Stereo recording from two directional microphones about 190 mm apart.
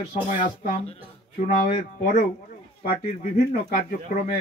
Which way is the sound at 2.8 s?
45° left (ahead or behind).